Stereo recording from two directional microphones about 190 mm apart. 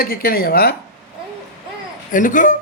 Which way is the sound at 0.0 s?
50° left (ahead or behind).